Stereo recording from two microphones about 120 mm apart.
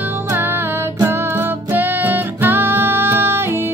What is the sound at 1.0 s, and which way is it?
Music, 20° right (ahead or behind).